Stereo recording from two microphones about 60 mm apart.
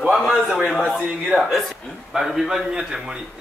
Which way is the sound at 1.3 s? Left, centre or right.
Centre.